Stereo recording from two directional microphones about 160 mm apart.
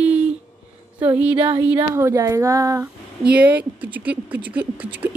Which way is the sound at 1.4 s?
35° right (ahead or behind).